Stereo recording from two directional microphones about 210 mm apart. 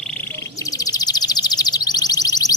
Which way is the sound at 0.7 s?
15° left (ahead or behind).